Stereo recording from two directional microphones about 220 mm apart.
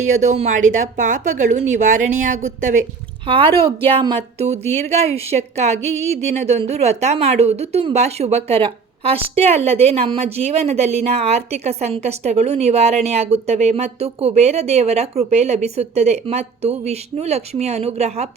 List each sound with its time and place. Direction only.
0.0 s speech: 35° right (ahead or behind)
3.2 s a woman's voice: 25° right (ahead or behind)